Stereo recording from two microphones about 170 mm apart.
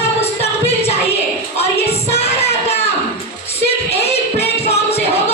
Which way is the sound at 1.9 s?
40° left (ahead or behind).